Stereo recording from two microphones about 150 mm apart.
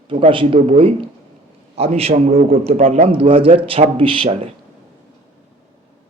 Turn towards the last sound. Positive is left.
turn(degrees=-40)  # may be behind; listen again after turning